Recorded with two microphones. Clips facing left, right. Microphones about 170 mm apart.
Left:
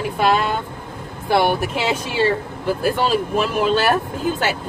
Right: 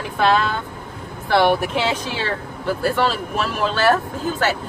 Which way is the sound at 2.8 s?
15° left (ahead or behind).